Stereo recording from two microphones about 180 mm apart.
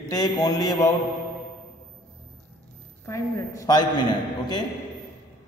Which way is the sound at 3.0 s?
15° left (ahead or behind).